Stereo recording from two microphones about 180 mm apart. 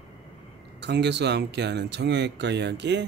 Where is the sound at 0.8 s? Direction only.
70° right (ahead or behind).